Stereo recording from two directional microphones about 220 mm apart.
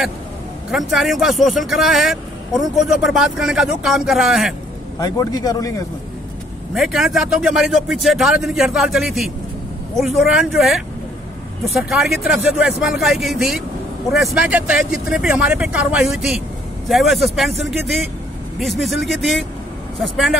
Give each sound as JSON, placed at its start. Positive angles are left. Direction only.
{"t": 0.7, "sound": "speech", "side_deg": 0}
{"t": 5.0, "sound": "a man's voice", "side_deg": 15}
{"t": 6.7, "sound": "speech", "side_deg": 0}